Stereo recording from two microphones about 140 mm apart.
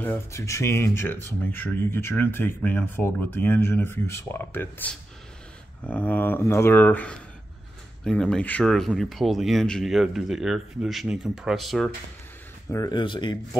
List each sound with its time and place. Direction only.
0.0 s speech: 15° left (ahead or behind); by 11.9 s centre (ahead or behind)
12.7 s speech: 25° left (ahead or behind)
13.0 s speech: 35° left (ahead or behind)